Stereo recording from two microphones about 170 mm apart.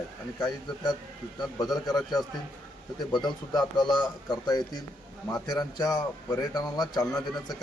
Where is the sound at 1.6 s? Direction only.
25° left (ahead or behind).